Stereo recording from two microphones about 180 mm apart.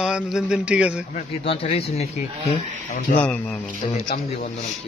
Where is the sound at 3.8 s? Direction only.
50° left (ahead or behind).